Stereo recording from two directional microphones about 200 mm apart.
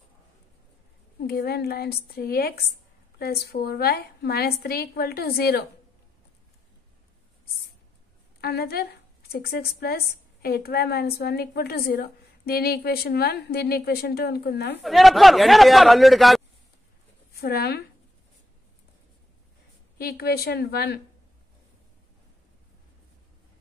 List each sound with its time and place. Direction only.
1.2 s a woman's voice: 50° left (ahead or behind)
8.4 s a woman's voice: 50° left (ahead or behind)
14.8 s speech: centre (ahead or behind)
17.4 s a woman's voice: 50° left (ahead or behind)
20.0 s a woman's voice: 50° left (ahead or behind)